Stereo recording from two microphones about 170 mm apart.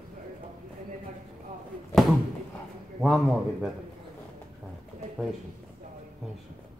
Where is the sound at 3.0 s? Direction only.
Centre (ahead or behind).